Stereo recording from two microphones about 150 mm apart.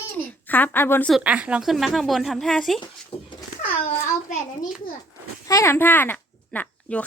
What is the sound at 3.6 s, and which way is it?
Speech, 65° left (ahead or behind).